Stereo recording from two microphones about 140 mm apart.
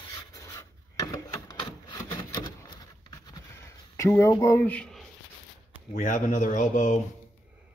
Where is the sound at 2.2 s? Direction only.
25° left (ahead or behind); by 5.1 s 5° left (ahead or behind).